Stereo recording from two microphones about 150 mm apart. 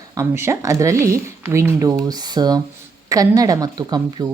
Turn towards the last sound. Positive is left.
turn(degrees=-25)  # may be behind; listen again after turning